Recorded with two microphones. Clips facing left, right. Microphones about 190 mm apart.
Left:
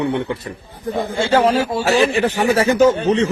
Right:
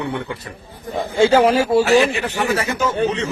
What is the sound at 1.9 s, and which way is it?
Speech, 35° left (ahead or behind).